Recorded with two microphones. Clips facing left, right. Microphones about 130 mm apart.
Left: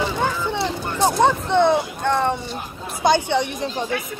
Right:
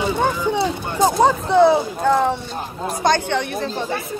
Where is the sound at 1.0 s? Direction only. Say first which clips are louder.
Right 2 dB; 5° right (ahead or behind).